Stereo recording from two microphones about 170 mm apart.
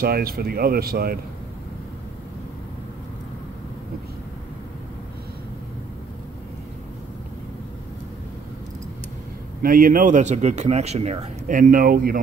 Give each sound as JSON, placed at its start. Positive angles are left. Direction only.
{"t": 0.0, "sound": "speech", "side_deg": -65}
{"t": 9.6, "sound": "speech", "side_deg": -55}
{"t": 11.4, "sound": "speech", "side_deg": -50}